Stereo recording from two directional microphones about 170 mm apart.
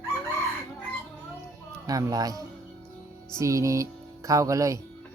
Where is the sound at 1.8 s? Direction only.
20° right (ahead or behind).